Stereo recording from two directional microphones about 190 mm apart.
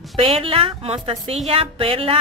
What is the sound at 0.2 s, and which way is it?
A woman's voice, 30° right (ahead or behind).